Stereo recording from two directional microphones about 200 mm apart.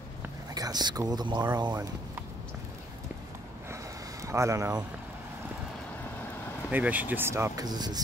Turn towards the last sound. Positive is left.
turn(degrees=-20)  # may be behind; listen again after turning